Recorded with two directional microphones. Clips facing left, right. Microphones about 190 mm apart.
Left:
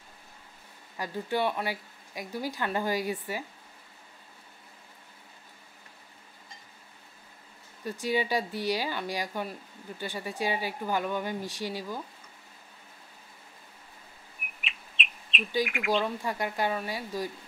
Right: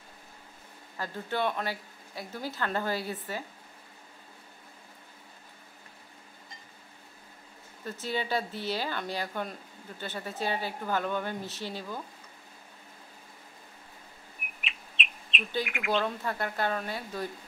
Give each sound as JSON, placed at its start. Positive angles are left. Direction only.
{"t": 0.9, "sound": "speech", "side_deg": 15}
{"t": 7.8, "sound": "speech", "side_deg": 10}
{"t": 14.6, "sound": "bird", "side_deg": 0}
{"t": 15.7, "sound": "speech", "side_deg": 0}
{"t": 16.2, "sound": "speech", "side_deg": 10}